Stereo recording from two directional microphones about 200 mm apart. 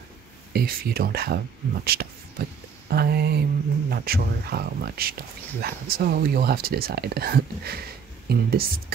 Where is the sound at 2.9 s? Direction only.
50° right (ahead or behind).